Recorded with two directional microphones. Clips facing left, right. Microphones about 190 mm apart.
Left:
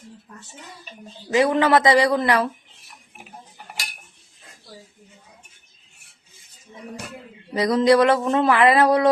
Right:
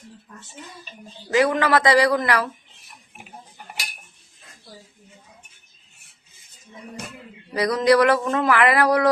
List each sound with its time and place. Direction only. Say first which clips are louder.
1.3 s speech: left 2 dB; 25° left (ahead or behind)
7.5 s speech: left 1 dB; 25° left (ahead or behind)